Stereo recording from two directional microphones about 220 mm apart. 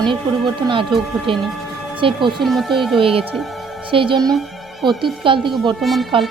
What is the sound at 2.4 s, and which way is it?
Speech, centre (ahead or behind).